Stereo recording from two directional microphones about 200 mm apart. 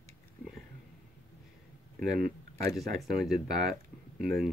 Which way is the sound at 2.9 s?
Centre (ahead or behind).